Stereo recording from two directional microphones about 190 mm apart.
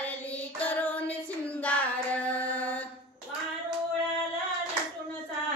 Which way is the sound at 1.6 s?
10° left (ahead or behind).